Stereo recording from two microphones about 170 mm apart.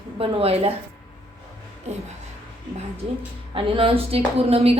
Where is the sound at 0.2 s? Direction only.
35° right (ahead or behind).